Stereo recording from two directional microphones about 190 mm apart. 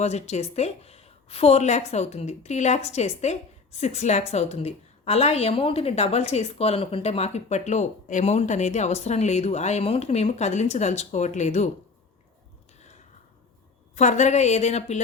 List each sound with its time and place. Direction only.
0.0 s a woman's voice: 35° left (ahead or behind)
13.9 s a woman's voice: 40° left (ahead or behind)